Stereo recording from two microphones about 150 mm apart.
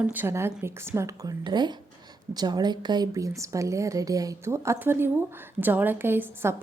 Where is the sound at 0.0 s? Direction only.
10° right (ahead or behind).